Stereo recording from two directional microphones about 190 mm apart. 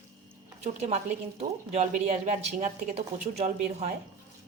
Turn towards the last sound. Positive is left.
turn(degrees=-35)  # may be behind; listen again after turning